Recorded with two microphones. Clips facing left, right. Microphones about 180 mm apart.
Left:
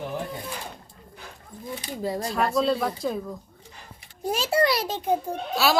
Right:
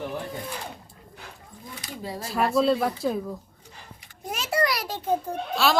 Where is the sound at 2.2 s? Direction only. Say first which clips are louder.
Right 3 dB; 5° right (ahead or behind).